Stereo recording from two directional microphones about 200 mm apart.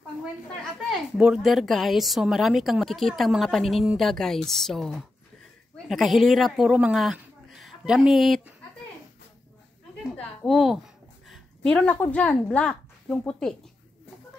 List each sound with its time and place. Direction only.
0.8 s speech: 5° right (ahead or behind)
10.1 s a woman's voice: centre (ahead or behind)